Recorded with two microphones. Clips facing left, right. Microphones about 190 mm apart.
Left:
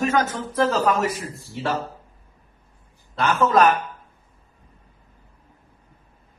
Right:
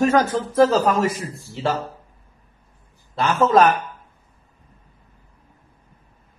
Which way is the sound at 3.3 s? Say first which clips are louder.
Right 3 dB; 30° right (ahead or behind).